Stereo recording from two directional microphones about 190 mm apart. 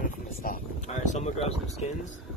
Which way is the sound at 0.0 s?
45° left (ahead or behind).